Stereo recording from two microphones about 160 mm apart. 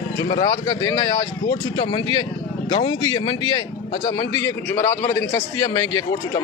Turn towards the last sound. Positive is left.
turn(degrees=20)  # may be behind; listen again after turning